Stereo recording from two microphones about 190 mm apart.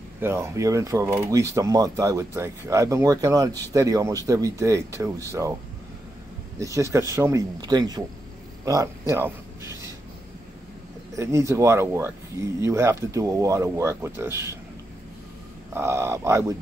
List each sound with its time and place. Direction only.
0.2 s speech: 15° right (ahead or behind)
6.6 s speech: 15° right (ahead or behind)
8.6 s a sound: 15° right (ahead or behind)
11.1 s speech: 15° right (ahead or behind)
15.7 s speech: 15° right (ahead or behind)